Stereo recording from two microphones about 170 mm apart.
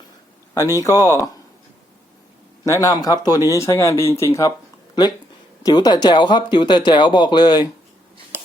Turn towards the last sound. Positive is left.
turn(degrees=25)  # may be behind; listen again after turning